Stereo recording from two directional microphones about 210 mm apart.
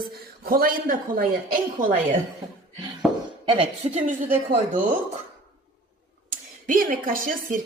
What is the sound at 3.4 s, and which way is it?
A man's voice, 25° right (ahead or behind).